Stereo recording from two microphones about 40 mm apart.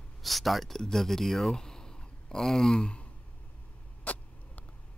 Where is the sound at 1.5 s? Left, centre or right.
Centre.